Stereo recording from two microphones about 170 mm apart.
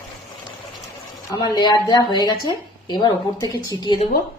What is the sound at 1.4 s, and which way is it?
A woman's voice, 25° left (ahead or behind).